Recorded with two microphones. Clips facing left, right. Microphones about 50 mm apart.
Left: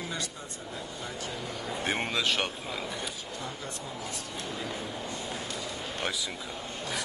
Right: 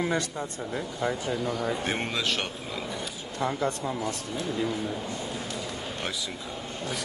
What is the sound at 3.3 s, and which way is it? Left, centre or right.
Speech, right.